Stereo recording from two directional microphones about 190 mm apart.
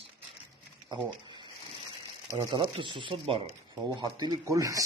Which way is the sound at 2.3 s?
25° right (ahead or behind).